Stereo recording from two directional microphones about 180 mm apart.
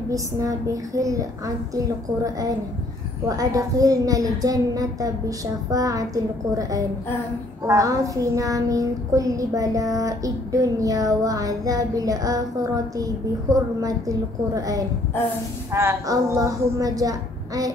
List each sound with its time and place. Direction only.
0.1 s child singing: 20° right (ahead or behind)
7.6 s child singing: 15° right (ahead or behind)